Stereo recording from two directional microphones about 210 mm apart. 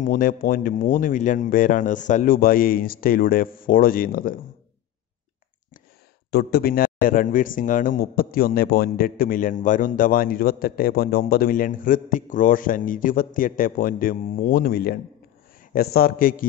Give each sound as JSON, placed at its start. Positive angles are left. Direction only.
{"t": 0.0, "sound": "speech", "side_deg": 40}
{"t": 6.3, "sound": "a man's voice", "side_deg": 45}